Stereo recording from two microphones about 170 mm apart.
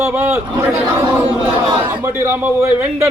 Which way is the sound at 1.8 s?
10° right (ahead or behind).